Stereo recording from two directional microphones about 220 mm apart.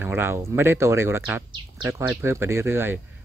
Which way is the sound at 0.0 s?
10° right (ahead or behind).